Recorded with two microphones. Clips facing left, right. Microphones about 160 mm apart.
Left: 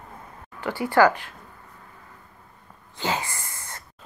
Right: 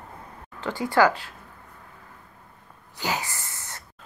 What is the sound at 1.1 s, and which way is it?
Speech, 15° left (ahead or behind).